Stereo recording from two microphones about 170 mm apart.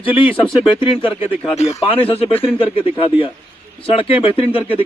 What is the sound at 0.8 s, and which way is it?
Speech, 30° left (ahead or behind).